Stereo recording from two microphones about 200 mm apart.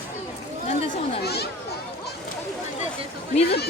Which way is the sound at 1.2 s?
55° left (ahead or behind).